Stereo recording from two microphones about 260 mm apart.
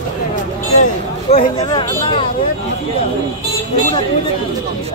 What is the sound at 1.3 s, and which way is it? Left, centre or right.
Speech, left.